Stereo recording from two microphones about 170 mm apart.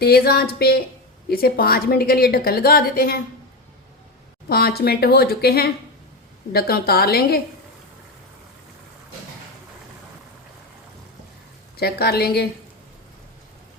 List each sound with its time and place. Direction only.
0.0 s a woman's voice: 65° left (ahead or behind)
4.4 s a woman's voice: 65° left (ahead or behind)
11.8 s a woman's voice: 65° left (ahead or behind)